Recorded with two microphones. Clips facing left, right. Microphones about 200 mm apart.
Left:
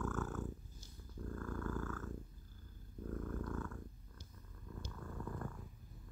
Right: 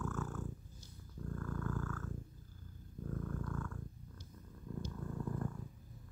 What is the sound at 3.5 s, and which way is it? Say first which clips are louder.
Purr: even; 5° left (ahead or behind).